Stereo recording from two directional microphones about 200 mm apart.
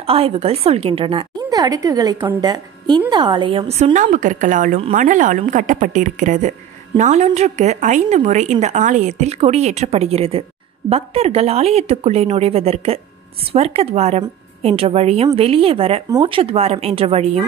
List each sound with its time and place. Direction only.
0.0 s a woman's voice: 30° right (ahead or behind)
4.7 s a woman's voice: 30° right (ahead or behind)
5.0 s a woman's voice: 40° right (ahead or behind)